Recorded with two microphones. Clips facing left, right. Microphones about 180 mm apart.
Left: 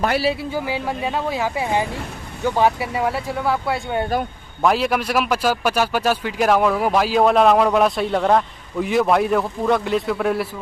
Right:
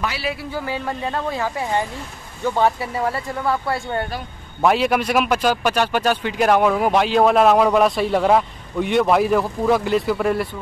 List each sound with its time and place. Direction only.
0.2 s speech: 30° left (ahead or behind)
0.5 s a man's voice: 10° left (ahead or behind)